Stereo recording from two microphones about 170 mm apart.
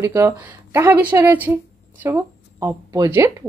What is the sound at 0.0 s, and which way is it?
A woman's voice, 15° right (ahead or behind).